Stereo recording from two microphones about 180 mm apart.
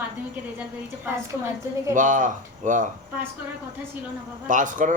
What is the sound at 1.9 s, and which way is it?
Speech, 45° right (ahead or behind).